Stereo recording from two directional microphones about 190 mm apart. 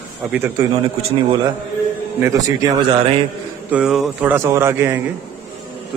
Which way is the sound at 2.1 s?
15° right (ahead or behind).